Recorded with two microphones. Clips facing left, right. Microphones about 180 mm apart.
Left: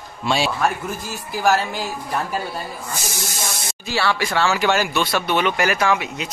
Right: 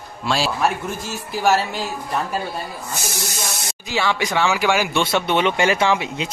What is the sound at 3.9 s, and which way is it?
Speech, 15° right (ahead or behind).